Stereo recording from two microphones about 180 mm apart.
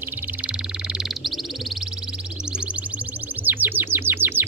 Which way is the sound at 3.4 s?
10° right (ahead or behind).